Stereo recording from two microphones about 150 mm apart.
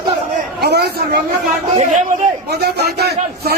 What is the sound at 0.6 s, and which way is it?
Speech, 90° right.